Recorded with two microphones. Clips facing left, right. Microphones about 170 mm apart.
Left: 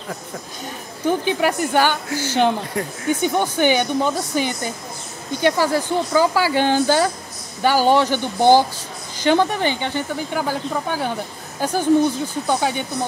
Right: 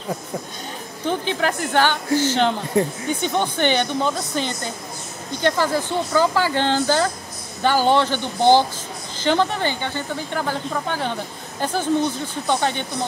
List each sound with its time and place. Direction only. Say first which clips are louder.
1.0 s speech: left 3 dB; 10° left (ahead or behind)
2.8 s speech: right 6 dB; 25° right (ahead or behind)
3.2 s speech: left 2 dB; 10° left (ahead or behind)